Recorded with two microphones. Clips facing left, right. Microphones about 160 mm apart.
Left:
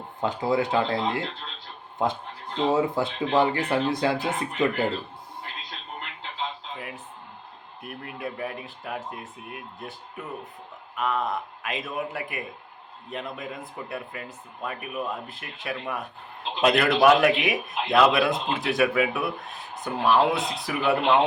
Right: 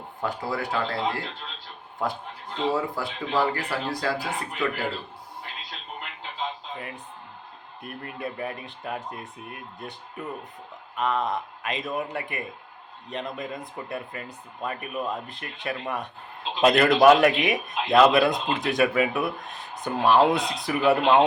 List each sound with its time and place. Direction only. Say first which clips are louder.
0.2 s speech: left 5 dB; 20° left (ahead or behind)
2.7 s speech: left 4 dB; 20° left (ahead or behind)
6.7 s music: even; 5° left (ahead or behind)
7.8 s a man's voice: right 1 dB; 5° left (ahead or behind)